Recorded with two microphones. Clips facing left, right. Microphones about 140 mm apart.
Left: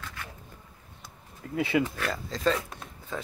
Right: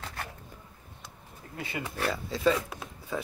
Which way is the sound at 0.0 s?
40° right (ahead or behind).